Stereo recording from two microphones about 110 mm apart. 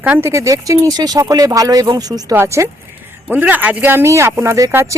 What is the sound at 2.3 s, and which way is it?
Speech, 25° right (ahead or behind).